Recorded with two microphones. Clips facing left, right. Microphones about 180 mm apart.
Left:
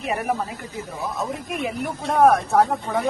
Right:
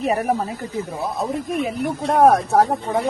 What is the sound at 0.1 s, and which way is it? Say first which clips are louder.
Speech: right 2 dB; 35° right (ahead or behind).